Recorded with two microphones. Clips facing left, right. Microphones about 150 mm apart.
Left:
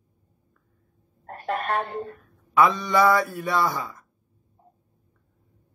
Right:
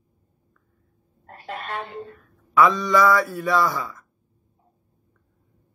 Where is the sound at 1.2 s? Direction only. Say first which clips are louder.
Left 6 dB; 45° left (ahead or behind).